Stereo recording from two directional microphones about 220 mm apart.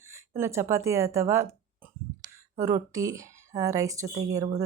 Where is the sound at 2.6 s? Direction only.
15° right (ahead or behind).